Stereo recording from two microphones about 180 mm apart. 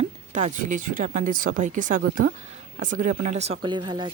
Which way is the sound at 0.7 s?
45° right (ahead or behind).